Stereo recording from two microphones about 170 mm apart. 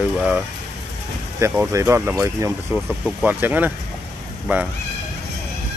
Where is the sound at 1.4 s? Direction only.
15° right (ahead or behind).